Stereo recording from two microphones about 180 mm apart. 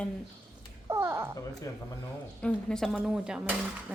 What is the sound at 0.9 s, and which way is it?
Speech, 15° right (ahead or behind).